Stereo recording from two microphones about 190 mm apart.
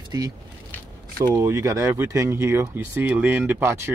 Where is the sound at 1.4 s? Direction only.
15° right (ahead or behind).